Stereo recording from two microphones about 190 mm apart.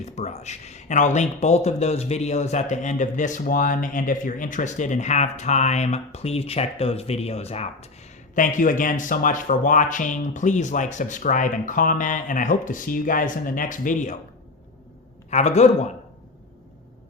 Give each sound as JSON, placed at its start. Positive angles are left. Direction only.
{"t": 0.0, "sound": "speech", "side_deg": 35}
{"t": 15.3, "sound": "speech", "side_deg": 35}